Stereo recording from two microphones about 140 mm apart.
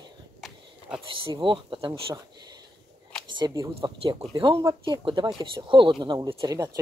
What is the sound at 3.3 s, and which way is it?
Speech, 25° right (ahead or behind).